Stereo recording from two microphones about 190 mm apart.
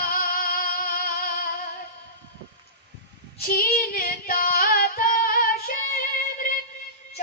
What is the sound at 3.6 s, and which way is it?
Female singing, 50° left (ahead or behind).